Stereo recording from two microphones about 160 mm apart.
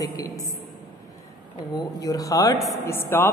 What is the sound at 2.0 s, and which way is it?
A woman's voice, 20° left (ahead or behind).